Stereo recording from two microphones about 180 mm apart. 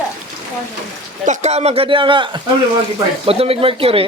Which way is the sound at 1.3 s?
40° right (ahead or behind).